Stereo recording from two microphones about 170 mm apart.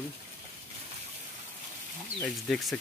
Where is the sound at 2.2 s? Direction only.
Centre (ahead or behind).